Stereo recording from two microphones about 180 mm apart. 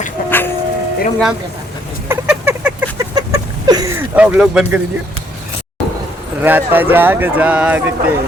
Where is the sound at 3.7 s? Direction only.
20° right (ahead or behind).